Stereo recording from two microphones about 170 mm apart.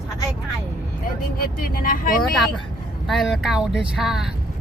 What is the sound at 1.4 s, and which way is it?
Speech, 60° left (ahead or behind).